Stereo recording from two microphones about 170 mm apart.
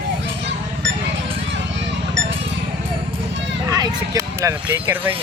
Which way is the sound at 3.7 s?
20° right (ahead or behind).